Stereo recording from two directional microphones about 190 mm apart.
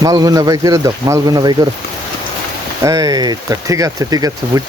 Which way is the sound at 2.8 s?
15° right (ahead or behind).